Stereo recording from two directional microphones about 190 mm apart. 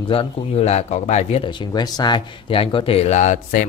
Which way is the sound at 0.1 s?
30° left (ahead or behind).